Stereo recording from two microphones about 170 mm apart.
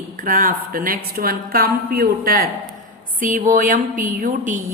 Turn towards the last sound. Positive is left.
turn(degrees=-50)  # may be behind; listen again after turning